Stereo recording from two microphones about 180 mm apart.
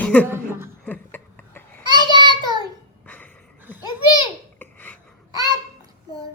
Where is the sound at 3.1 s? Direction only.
10° left (ahead or behind).